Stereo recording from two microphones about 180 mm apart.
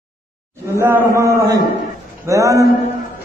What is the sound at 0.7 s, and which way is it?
A man's voice, 15° right (ahead or behind).